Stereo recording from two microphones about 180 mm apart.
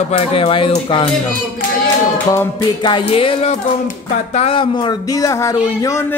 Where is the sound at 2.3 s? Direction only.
20° left (ahead or behind).